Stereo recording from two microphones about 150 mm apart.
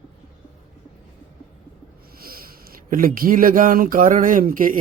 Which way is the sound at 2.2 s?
75° right (ahead or behind).